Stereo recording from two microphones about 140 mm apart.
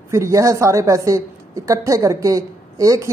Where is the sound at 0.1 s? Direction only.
20° right (ahead or behind).